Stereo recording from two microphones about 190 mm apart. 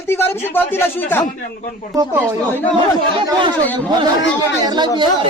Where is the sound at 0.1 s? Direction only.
10° left (ahead or behind).